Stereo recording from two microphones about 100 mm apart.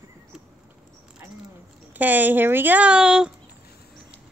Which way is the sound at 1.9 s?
15° right (ahead or behind).